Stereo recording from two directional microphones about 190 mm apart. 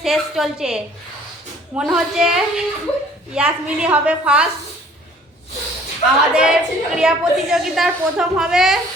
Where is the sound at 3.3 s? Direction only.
5° right (ahead or behind).